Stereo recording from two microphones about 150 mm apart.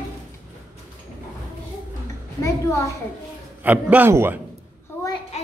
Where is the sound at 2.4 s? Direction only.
20° left (ahead or behind).